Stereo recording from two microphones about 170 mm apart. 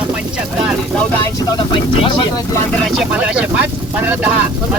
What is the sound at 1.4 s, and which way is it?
Speech, 25° left (ahead or behind).